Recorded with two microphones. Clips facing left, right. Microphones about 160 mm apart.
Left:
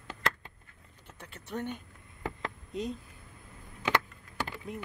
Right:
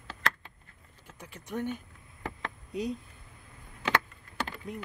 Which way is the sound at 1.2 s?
10° right (ahead or behind).